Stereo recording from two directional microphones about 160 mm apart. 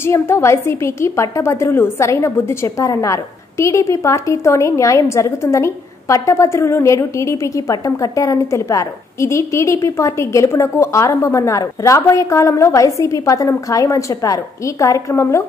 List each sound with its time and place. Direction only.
0.0 s a woman's voice: 15° left (ahead or behind)